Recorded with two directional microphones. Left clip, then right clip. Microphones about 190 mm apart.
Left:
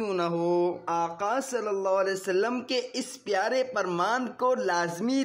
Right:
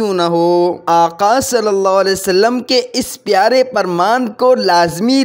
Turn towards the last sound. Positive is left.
turn(degrees=-45)  # may be behind; listen again after turning